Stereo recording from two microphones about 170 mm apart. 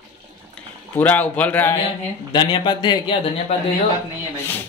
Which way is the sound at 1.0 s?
10° left (ahead or behind).